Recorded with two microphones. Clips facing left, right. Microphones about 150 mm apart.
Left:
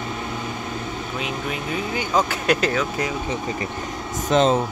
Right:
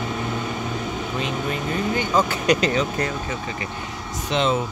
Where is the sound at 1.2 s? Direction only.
5° left (ahead or behind).